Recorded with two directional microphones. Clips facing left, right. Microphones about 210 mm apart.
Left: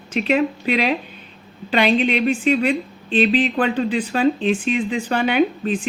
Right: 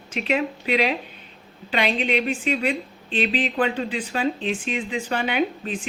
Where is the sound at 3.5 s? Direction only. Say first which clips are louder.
Left 4 dB; 45° left (ahead or behind).